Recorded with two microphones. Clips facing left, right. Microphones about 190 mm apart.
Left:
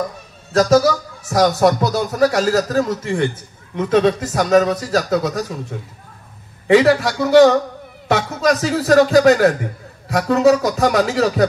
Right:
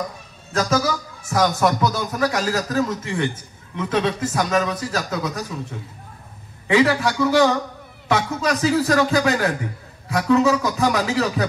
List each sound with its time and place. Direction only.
0.5 s speech: 35° left (ahead or behind)
6.7 s speech: 35° left (ahead or behind)